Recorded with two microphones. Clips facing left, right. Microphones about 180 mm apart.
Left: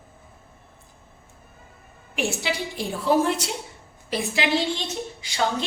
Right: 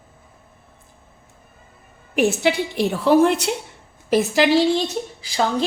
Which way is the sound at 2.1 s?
55° right (ahead or behind).